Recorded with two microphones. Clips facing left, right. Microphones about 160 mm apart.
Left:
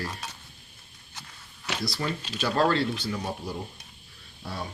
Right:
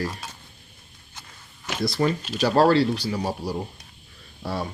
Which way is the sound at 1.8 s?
50° right (ahead or behind).